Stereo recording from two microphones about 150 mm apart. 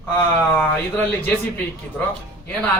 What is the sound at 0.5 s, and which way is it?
Speech, 10° left (ahead or behind).